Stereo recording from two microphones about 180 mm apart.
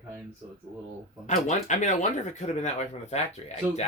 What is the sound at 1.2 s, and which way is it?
Speech, 40° left (ahead or behind).